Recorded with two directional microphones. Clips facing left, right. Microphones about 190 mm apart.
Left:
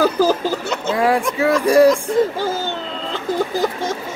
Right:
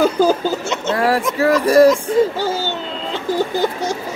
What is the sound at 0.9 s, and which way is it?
Music, centre (ahead or behind).